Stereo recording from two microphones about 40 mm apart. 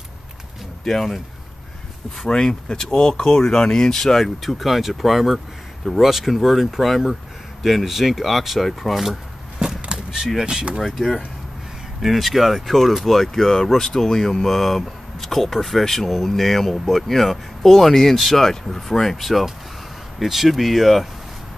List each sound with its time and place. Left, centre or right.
0.8 s speech: centre
2.2 s speech: centre
4.2 s speech: centre
10.4 s speech: right
12.0 s speech: centre